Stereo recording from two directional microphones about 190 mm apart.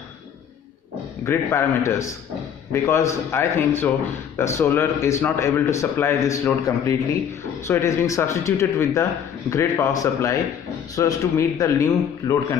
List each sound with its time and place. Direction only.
1.2 s speech: 15° left (ahead or behind)